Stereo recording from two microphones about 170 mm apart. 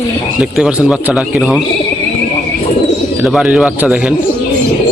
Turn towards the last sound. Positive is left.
turn(degrees=-5)  # may be behind; listen again after turning